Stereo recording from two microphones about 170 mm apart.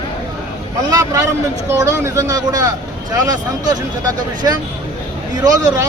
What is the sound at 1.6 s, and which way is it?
A man's voice, 15° right (ahead or behind).